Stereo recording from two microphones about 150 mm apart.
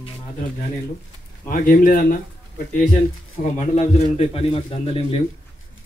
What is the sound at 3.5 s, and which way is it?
A man's voice, 50° left (ahead or behind).